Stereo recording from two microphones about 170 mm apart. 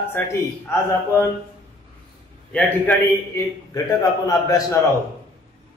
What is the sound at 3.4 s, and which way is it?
A man's voice, 20° left (ahead or behind).